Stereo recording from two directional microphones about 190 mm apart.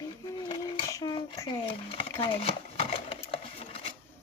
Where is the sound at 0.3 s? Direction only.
25° left (ahead or behind).